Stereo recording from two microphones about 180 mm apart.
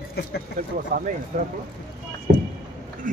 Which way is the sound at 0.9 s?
55° right (ahead or behind).